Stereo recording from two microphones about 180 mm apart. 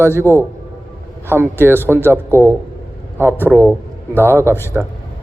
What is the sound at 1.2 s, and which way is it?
Speech, 15° right (ahead or behind).